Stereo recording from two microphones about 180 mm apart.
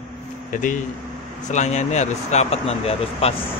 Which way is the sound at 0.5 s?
45° left (ahead or behind).